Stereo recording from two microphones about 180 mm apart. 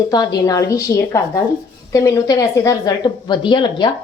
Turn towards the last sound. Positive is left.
turn(degrees=25)  # may be behind; listen again after turning